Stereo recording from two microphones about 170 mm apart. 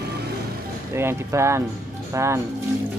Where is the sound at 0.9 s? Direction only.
15° right (ahead or behind).